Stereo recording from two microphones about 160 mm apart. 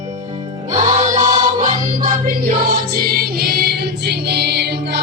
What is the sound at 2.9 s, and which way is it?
Music, 75° right (ahead or behind).